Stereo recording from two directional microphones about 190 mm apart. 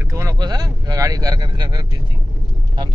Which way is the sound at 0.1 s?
15° right (ahead or behind).